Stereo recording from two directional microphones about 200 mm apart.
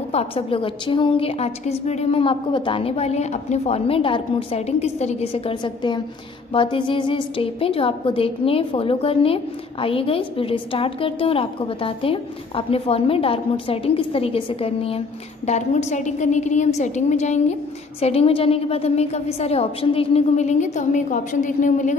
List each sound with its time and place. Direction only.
0.1 s a woman's voice: 30° left (ahead or behind)